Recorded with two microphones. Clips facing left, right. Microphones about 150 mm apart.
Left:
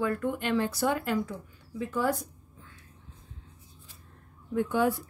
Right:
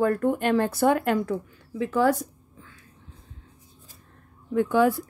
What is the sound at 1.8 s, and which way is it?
Speech, 90° right.